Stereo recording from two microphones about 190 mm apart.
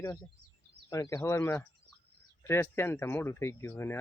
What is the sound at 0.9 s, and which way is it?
Speech, 15° left (ahead or behind).